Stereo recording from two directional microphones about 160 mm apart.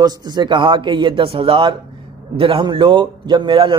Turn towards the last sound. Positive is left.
turn(degrees=-30)  # may be behind; listen again after turning